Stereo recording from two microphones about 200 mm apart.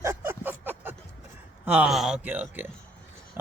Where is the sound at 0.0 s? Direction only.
15° right (ahead or behind).